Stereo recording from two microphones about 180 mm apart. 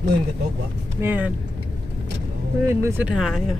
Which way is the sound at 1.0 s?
10° right (ahead or behind).